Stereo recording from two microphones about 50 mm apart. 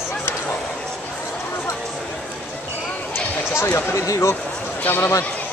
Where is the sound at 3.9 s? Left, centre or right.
Left.